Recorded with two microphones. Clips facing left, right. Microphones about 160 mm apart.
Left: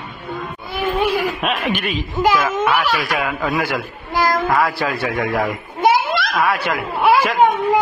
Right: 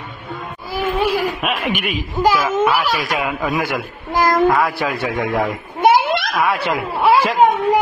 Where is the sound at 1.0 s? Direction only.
5° right (ahead or behind).